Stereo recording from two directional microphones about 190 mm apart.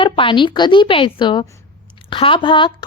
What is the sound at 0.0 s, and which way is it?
A woman's voice, 25° left (ahead or behind).